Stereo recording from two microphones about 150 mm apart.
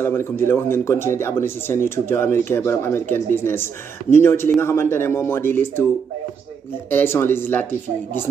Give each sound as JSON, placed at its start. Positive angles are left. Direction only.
{"t": 0.0, "sound": "speech", "side_deg": 15}
{"t": 6.9, "sound": "speech", "side_deg": 15}